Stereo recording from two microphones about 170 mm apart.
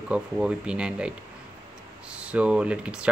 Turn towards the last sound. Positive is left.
turn(degrees=-5)  # may be behind; listen again after turning